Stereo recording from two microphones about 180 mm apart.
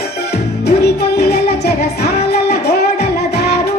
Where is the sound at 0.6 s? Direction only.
65° left (ahead or behind).